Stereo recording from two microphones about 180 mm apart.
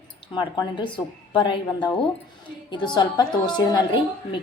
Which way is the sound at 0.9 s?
25° left (ahead or behind).